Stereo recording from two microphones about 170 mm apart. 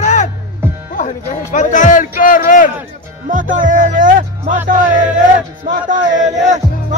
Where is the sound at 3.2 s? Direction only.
50° right (ahead or behind).